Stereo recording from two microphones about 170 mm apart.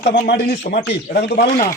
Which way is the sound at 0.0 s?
70° left (ahead or behind).